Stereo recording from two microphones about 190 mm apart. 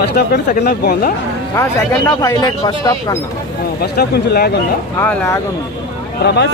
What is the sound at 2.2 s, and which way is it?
Speech, 20° left (ahead or behind).